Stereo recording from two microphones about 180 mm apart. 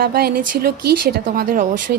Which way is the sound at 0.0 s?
60° right (ahead or behind).